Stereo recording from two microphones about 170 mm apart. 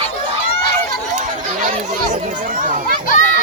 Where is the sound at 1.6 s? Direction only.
50° right (ahead or behind).